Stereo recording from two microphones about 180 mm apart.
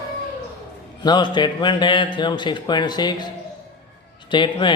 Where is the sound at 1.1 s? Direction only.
25° left (ahead or behind).